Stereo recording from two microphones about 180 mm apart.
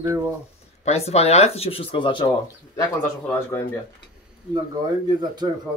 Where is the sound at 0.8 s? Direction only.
35° left (ahead or behind).